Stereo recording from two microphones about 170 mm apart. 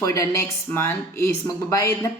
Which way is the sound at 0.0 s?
20° left (ahead or behind).